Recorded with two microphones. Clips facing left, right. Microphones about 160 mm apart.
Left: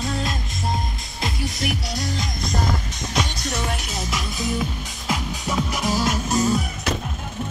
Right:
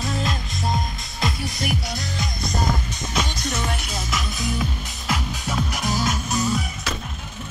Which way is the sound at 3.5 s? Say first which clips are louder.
Left 3 dB; 35° left (ahead or behind).